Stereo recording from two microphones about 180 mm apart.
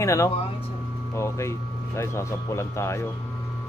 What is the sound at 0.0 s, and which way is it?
A man's voice, 15° left (ahead or behind).